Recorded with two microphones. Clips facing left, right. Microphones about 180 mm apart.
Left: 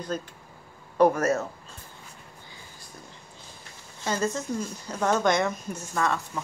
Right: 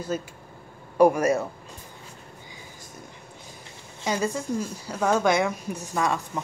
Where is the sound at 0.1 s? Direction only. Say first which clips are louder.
Right 3 dB; 5° right (ahead or behind).